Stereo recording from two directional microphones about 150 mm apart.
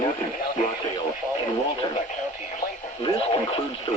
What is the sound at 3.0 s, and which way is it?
Speech, 40° left (ahead or behind).